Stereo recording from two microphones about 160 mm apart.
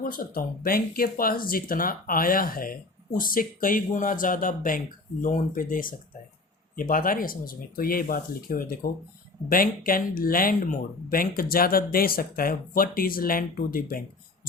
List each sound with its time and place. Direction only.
0.0 s speech: 60° left (ahead or behind)